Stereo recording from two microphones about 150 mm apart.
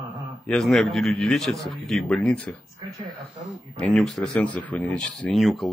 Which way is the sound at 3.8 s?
5° left (ahead or behind).